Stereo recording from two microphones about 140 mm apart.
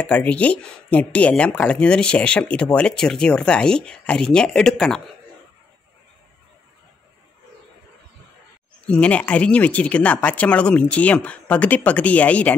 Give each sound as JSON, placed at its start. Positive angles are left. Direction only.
{"t": 0.0, "sound": "speech", "side_deg": 10}
{"t": 8.8, "sound": "speech", "side_deg": 10}